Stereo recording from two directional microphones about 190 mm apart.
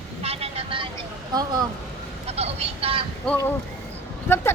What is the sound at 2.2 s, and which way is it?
Speech, 35° right (ahead or behind).